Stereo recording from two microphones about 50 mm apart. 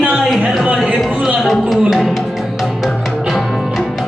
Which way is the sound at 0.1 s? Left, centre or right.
Centre.